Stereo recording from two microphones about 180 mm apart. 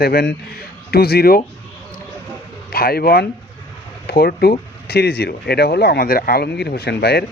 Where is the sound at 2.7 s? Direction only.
60° left (ahead or behind).